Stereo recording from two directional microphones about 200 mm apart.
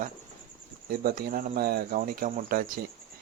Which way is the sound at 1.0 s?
45° right (ahead or behind).